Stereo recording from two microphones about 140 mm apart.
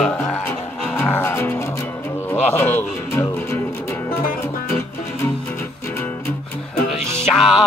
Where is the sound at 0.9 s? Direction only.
20° left (ahead or behind).